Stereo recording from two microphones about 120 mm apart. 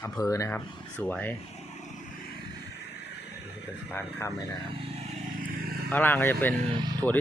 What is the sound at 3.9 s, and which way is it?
Speech, 20° left (ahead or behind).